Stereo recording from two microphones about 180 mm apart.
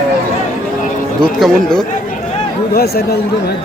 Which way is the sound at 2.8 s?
60° left (ahead or behind).